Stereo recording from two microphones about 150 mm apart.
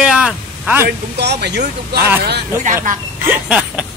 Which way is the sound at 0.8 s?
90° right.